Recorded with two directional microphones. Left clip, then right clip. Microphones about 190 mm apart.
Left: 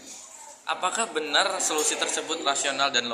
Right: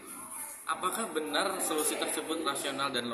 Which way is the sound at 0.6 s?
15° right (ahead or behind).